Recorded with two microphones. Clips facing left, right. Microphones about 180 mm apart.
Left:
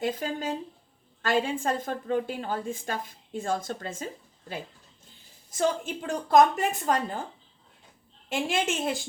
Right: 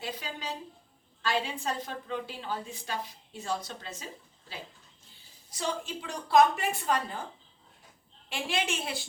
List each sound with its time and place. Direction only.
0.0 s a woman's voice: 50° left (ahead or behind)
8.3 s a woman's voice: 45° left (ahead or behind)